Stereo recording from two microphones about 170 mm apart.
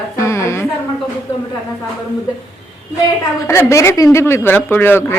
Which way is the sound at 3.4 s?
15° left (ahead or behind).